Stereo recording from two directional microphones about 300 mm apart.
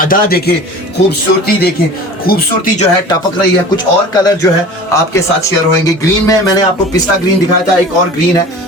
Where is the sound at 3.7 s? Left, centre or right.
Centre.